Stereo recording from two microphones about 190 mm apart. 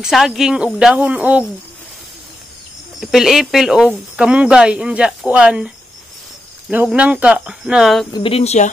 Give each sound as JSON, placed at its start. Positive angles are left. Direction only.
{"t": 0.0, "sound": "speech", "side_deg": 0}
{"t": 3.0, "sound": "speech", "side_deg": 0}
{"t": 6.7, "sound": "speech", "side_deg": -10}
{"t": 8.1, "sound": "speech", "side_deg": 30}